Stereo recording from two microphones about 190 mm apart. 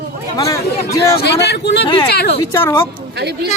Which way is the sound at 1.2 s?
60° left (ahead or behind).